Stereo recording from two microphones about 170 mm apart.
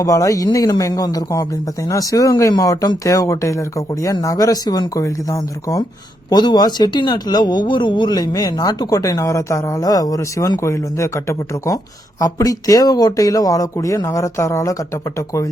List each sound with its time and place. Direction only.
0.0 s speech: 20° left (ahead or behind)